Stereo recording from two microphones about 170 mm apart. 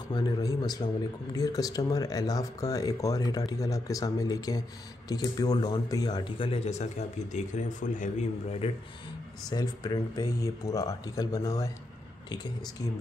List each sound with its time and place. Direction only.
0.1 s speech: 20° left (ahead or behind)
9.5 s speech: 20° left (ahead or behind)